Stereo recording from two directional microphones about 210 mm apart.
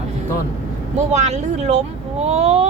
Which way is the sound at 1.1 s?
35° right (ahead or behind).